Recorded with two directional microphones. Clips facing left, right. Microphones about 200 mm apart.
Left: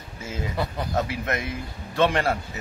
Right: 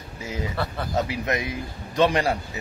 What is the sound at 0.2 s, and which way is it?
Speech, 15° right (ahead or behind).